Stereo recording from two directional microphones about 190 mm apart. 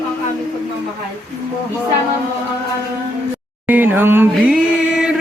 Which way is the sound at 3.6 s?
10° right (ahead or behind).